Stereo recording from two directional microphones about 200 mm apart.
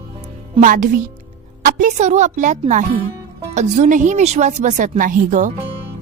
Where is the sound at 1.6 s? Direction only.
40° right (ahead or behind).